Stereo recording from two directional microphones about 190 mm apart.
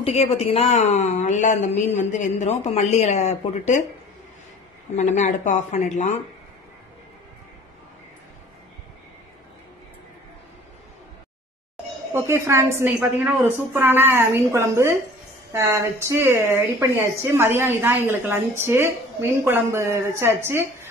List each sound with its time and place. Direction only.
0.0 s a woman's voice: 30° left (ahead or behind)
4.9 s a woman's voice: 35° left (ahead or behind)
12.1 s a woman's voice: 15° right (ahead or behind)